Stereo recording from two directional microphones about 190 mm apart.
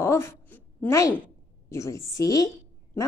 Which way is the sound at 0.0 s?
15° left (ahead or behind).